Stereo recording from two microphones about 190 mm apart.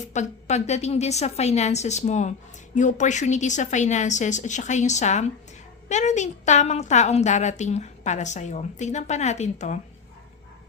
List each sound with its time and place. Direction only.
0.0 s a woman's voice: 40° left (ahead or behind)